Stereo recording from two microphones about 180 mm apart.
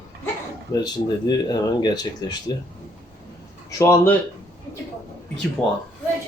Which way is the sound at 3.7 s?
15° left (ahead or behind).